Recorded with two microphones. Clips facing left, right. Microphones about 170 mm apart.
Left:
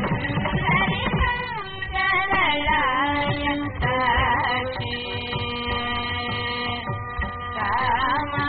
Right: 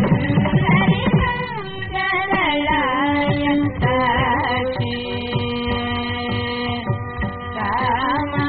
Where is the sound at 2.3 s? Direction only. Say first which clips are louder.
Right 6 dB; 30° right (ahead or behind).